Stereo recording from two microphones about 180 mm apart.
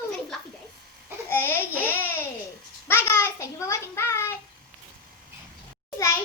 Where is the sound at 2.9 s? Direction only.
15° left (ahead or behind).